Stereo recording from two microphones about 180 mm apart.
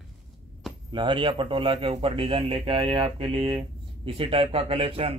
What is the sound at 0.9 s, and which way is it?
A man's voice, 25° right (ahead or behind).